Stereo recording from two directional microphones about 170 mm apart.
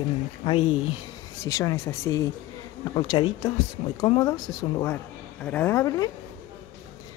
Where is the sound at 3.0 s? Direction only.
30° left (ahead or behind).